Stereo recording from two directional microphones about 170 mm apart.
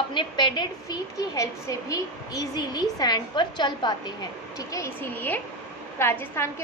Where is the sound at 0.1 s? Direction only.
25° left (ahead or behind).